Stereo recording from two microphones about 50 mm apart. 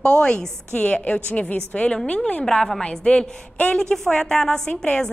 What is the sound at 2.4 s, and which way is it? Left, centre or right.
A woman's voice, centre.